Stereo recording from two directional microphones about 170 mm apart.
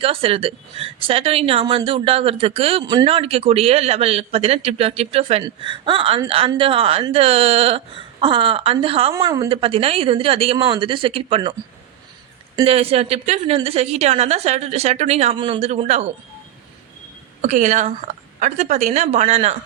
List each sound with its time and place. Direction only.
0.0 s a man's voice: 35° right (ahead or behind)
9.1 s a woman's voice: 20° right (ahead or behind)
9.5 s a man's voice: 35° right (ahead or behind)
12.6 s a man's voice: 35° right (ahead or behind)
17.4 s a woman's voice: 45° right (ahead or behind)